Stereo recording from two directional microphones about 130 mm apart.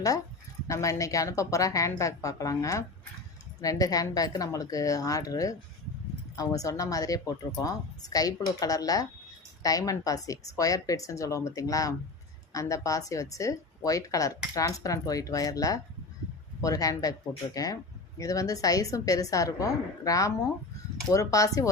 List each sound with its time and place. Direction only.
0.7 s speech: 25° left (ahead or behind)